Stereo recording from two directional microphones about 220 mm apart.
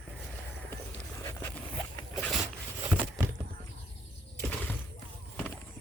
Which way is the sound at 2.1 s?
Centre (ahead or behind).